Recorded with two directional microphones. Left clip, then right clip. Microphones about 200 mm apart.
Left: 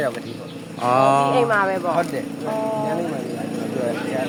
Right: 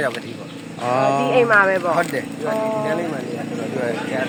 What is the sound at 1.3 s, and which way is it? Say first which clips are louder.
Speech: right 4 dB; 35° right (ahead or behind).